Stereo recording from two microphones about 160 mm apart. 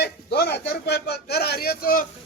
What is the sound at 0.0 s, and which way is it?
A man's voice, 85° left.